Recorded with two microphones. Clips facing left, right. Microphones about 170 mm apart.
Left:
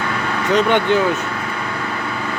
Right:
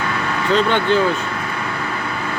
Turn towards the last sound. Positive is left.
turn(degrees=15)  # may be behind; listen again after turning